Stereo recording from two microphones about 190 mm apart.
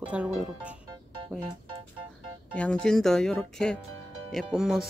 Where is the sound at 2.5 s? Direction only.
5° left (ahead or behind).